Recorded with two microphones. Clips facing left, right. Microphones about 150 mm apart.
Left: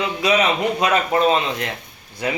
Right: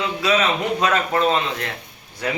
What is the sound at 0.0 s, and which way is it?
A man's voice, 15° left (ahead or behind).